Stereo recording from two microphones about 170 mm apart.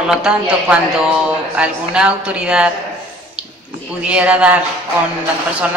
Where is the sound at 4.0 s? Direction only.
5° right (ahead or behind).